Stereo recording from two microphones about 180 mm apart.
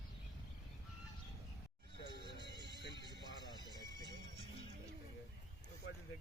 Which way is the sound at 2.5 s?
70° left (ahead or behind).